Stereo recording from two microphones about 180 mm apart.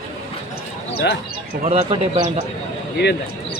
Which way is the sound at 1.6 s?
35° right (ahead or behind).